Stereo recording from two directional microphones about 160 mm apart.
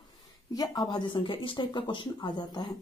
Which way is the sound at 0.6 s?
25° left (ahead or behind).